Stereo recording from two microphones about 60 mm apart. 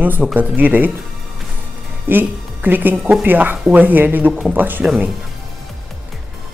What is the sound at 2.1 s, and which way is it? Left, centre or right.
Speech, right.